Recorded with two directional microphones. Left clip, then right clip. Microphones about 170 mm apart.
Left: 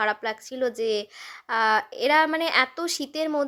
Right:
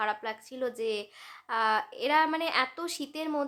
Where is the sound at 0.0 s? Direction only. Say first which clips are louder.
Left 6 dB; 35° left (ahead or behind).